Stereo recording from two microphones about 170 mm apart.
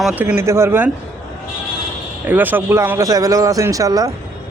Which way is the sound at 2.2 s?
10° right (ahead or behind).